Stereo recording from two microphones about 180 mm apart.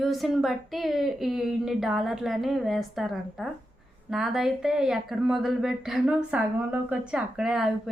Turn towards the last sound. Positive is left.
turn(degrees=-5)  # may be behind; listen again after turning